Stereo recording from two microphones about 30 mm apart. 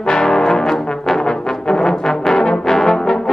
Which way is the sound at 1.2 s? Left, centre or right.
Centre.